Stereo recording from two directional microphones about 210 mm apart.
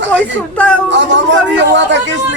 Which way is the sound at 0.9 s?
60° right (ahead or behind).